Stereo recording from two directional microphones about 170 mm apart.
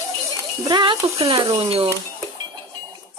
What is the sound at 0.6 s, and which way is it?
Speech, 25° right (ahead or behind).